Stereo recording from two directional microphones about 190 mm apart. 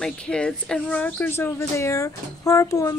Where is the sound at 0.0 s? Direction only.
5° left (ahead or behind).